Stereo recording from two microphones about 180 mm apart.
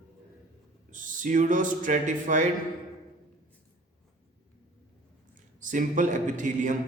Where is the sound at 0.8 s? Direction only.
45° right (ahead or behind).